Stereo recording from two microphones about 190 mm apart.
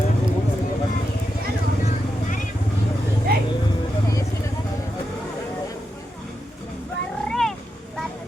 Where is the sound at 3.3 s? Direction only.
55° right (ahead or behind).